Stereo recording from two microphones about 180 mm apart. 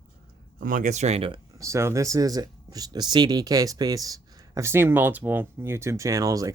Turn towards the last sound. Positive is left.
turn(degrees=-20)  # may be behind; listen again after turning